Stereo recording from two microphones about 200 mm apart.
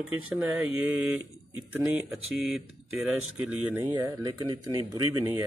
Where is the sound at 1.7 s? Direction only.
Centre (ahead or behind).